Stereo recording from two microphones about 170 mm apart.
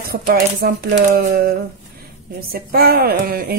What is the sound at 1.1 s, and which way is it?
A woman's voice, 55° right (ahead or behind).